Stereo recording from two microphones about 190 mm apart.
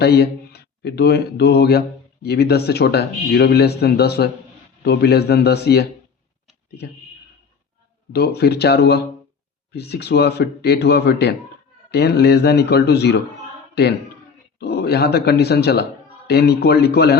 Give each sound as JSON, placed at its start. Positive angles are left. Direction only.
{"t": 0.0, "sound": "a man's voice", "side_deg": 60}
{"t": 8.1, "sound": "a man's voice", "side_deg": 55}